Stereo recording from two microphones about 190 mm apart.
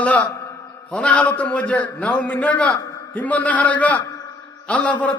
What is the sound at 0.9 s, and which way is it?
A man's voice, 5° left (ahead or behind).